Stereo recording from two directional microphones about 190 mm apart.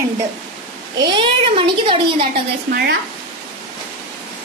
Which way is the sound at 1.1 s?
25° right (ahead or behind).